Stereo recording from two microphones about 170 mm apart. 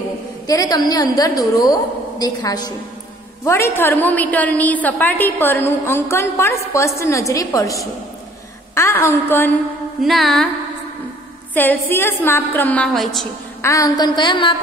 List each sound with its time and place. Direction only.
0.5 s a woman's voice: 20° left (ahead or behind)
10.0 s music: centre (ahead or behind)
11.5 s a woman's voice: 10° left (ahead or behind)
13.6 s a woman's voice: 20° left (ahead or behind)